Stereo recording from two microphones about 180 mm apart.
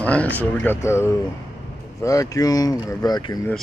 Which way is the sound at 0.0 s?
10° left (ahead or behind).